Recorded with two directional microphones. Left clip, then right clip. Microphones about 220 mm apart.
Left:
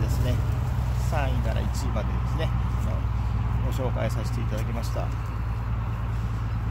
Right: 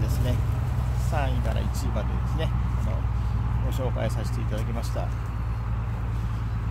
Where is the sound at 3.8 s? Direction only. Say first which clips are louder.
Even; 15° right (ahead or behind).